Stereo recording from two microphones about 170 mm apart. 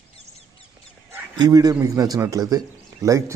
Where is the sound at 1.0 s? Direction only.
20° right (ahead or behind).